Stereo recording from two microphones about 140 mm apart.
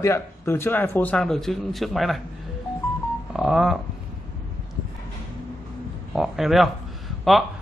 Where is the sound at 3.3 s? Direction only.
5° right (ahead or behind).